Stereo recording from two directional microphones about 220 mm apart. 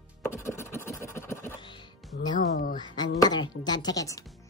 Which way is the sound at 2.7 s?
20° left (ahead or behind).